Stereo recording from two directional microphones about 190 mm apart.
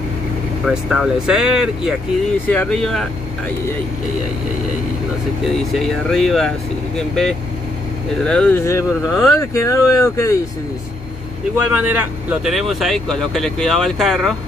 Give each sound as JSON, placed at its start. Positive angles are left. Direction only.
{"t": 0.7, "sound": "speech", "side_deg": -5}
{"t": 2.4, "sound": "speech", "side_deg": 10}
{"t": 5.4, "sound": "speech", "side_deg": 0}
{"t": 11.5, "sound": "speech", "side_deg": -10}